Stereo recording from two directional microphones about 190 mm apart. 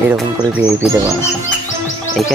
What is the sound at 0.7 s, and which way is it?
Speech, 10° right (ahead or behind).